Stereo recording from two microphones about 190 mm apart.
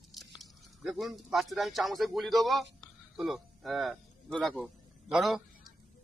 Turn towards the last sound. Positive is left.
turn(degrees=0)  # may be behind; listen again after turning